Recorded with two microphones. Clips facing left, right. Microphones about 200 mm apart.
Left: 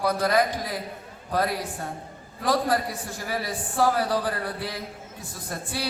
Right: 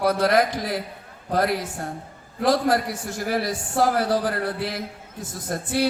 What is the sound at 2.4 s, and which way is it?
A man's voice, 75° right (ahead or behind).